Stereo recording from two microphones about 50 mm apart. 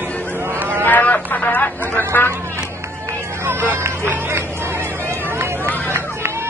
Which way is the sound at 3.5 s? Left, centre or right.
Right.